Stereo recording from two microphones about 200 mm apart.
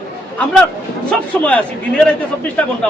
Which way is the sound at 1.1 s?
5° left (ahead or behind).